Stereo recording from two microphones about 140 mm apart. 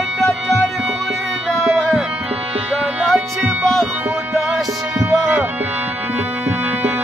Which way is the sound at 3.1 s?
Centre (ahead or behind).